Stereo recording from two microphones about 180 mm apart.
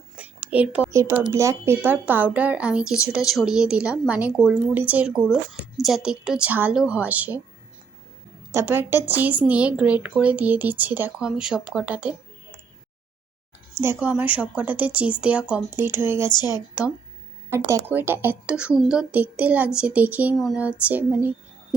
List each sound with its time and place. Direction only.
0.5 s a woman's voice: 5° right (ahead or behind)
8.5 s a woman's voice: 10° right (ahead or behind)
14.0 s a woman's voice: 10° right (ahead or behind)
16.3 s a woman's voice: 20° left (ahead or behind)
17.5 s a woman's voice: 15° right (ahead or behind)